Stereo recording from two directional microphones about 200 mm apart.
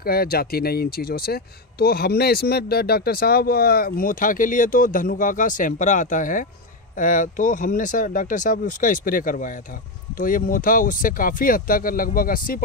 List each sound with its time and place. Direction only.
0.0 s speech: 50° left (ahead or behind)